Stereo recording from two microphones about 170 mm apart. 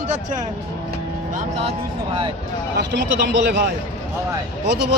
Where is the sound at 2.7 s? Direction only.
80° right.